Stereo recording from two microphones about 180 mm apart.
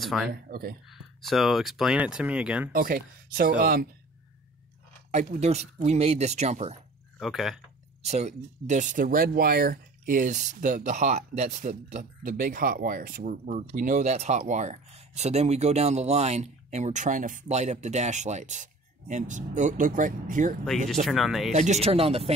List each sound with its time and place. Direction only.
0.0 s speech: centre (ahead or behind)
0.3 s speech: 55° right (ahead or behind)
0.8 s speech: centre (ahead or behind)
2.7 s speech: 55° right (ahead or behind)
5.1 s speech: 40° right (ahead or behind)
7.2 s speech: centre (ahead or behind)
8.0 s speech: 35° right (ahead or behind)
20.6 s speech: centre (ahead or behind)
21.5 s speech: 40° right (ahead or behind)